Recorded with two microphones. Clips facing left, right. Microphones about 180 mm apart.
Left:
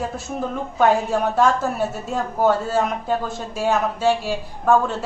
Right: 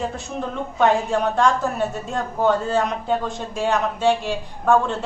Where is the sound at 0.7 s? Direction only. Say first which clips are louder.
Left 1 dB; 5° left (ahead or behind).